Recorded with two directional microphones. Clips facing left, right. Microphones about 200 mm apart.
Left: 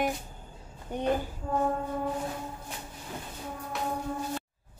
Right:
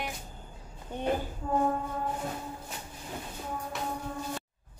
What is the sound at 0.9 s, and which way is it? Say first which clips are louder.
Speech: left 3 dB; 15° left (ahead or behind).